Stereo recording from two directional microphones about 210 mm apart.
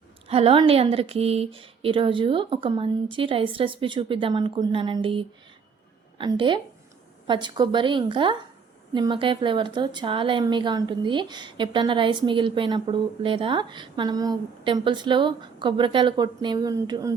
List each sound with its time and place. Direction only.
0.3 s a woman's voice: 30° right (ahead or behind)